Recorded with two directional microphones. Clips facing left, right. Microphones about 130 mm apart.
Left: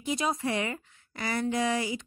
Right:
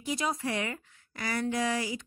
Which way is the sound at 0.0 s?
25° left (ahead or behind).